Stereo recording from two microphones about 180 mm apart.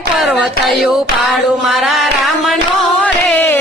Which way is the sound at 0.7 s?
Centre (ahead or behind).